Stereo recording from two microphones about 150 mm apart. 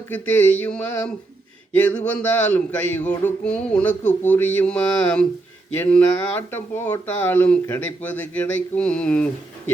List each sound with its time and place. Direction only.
0.1 s speech: 10° left (ahead or behind)